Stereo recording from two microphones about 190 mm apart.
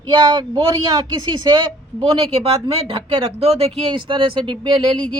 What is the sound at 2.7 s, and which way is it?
Speech, 30° right (ahead or behind).